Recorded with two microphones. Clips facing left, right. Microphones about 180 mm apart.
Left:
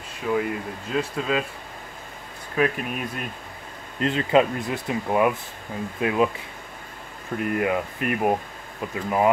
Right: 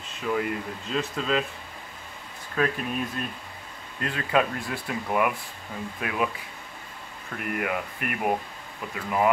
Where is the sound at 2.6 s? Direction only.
15° left (ahead or behind).